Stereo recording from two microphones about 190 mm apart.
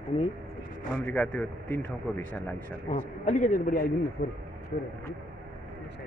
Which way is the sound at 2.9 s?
45° left (ahead or behind).